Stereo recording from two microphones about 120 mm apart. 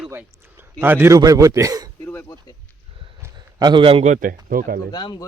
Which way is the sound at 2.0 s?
15° left (ahead or behind).